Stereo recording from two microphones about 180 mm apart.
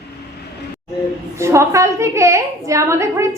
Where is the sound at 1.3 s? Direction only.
15° right (ahead or behind).